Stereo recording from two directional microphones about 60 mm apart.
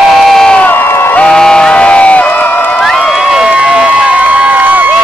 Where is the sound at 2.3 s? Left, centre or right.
Left.